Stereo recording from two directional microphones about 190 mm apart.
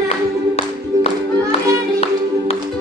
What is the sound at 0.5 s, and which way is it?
Music, 35° left (ahead or behind).